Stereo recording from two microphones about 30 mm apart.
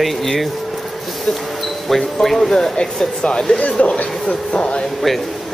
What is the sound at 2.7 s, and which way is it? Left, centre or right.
Speech, left.